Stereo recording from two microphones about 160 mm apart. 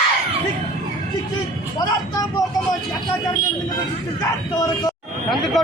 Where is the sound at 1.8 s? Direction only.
25° left (ahead or behind).